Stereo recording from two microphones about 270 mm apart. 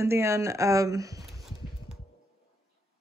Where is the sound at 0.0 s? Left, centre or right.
Centre.